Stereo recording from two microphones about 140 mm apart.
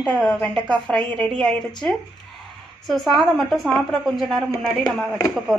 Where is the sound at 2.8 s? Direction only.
Centre (ahead or behind).